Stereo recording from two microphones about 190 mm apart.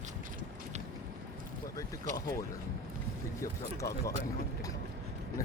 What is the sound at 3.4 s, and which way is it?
Speech, 15° left (ahead or behind).